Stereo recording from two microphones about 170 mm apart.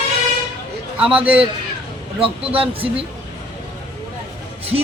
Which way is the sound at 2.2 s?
35° right (ahead or behind).